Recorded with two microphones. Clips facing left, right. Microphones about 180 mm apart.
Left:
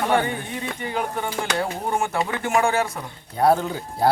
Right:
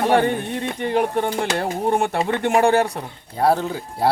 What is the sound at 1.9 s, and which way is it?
Speech, 35° right (ahead or behind).